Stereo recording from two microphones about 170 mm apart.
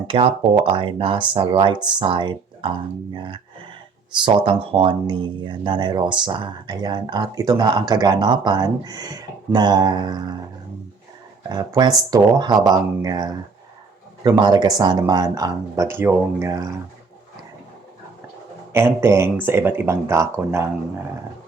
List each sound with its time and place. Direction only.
0.1 s speech: 30° right (ahead or behind)
11.4 s speech: 25° right (ahead or behind)
14.3 s speech: 25° right (ahead or behind)
18.7 s speech: 15° right (ahead or behind)